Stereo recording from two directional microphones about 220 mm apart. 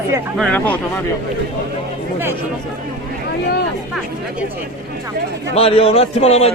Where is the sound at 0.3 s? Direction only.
5° left (ahead or behind).